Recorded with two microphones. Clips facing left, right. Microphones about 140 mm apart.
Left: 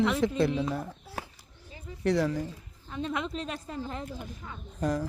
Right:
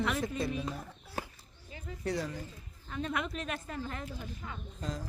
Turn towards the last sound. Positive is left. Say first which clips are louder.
# left 10 dB
turn(degrees=65)  # may be behind; listen again after turning